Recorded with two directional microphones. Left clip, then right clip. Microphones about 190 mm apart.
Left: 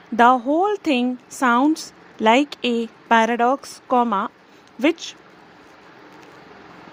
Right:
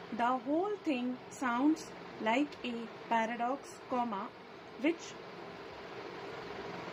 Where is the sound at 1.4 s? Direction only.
55° left (ahead or behind).